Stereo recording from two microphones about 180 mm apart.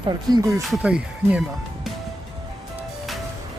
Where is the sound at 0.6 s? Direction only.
Centre (ahead or behind).